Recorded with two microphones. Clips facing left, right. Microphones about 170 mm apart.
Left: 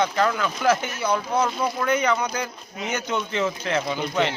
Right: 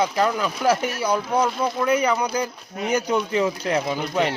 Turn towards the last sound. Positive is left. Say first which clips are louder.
# right 1 dB
turn(degrees=-5)  # may be behind; listen again after turning